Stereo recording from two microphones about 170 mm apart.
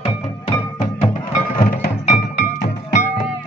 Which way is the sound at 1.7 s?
50° left (ahead or behind).